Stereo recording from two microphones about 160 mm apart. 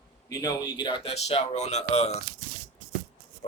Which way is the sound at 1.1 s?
40° left (ahead or behind).